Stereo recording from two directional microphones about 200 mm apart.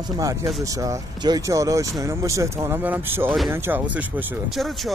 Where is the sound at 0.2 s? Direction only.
15° right (ahead or behind).